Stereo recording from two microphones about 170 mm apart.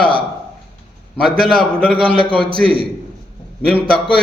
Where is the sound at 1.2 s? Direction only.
Centre (ahead or behind).